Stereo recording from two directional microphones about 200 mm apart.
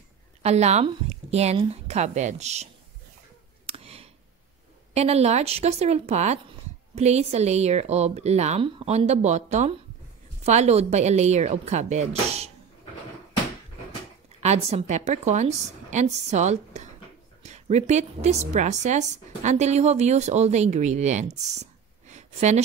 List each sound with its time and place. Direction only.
0.4 s a woman's voice: 35° right (ahead or behind)
3.6 s a sound: 30° right (ahead or behind)
4.9 s a woman's voice: 30° right (ahead or behind)
14.4 s a woman's voice: 35° right (ahead or behind)